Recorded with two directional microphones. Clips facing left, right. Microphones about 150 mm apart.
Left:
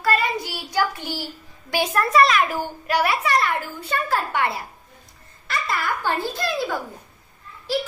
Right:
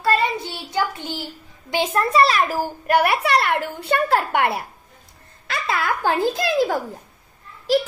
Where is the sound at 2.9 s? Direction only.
60° right (ahead or behind).